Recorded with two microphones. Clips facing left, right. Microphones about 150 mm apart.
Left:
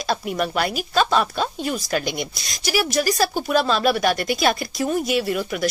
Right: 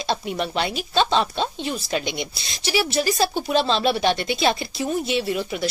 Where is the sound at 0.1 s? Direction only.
25° right (ahead or behind).